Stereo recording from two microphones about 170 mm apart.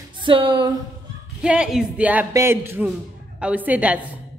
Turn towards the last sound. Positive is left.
turn(degrees=-10)  # may be behind; listen again after turning